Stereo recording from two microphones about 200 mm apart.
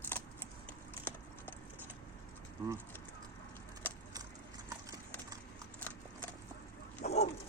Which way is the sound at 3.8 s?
10° left (ahead or behind).